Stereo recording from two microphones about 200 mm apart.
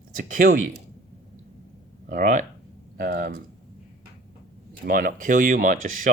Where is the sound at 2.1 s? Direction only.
40° right (ahead or behind).